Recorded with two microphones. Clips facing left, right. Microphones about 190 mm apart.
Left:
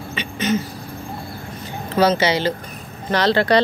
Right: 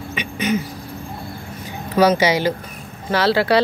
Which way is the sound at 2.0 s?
10° right (ahead or behind).